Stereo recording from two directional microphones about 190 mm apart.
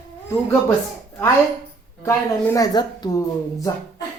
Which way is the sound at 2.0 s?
15° left (ahead or behind).